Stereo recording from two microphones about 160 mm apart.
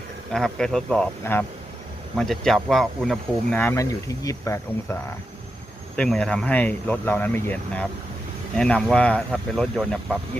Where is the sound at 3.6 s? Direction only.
15° left (ahead or behind).